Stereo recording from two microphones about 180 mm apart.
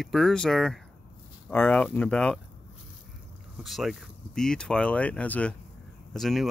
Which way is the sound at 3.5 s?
Centre (ahead or behind).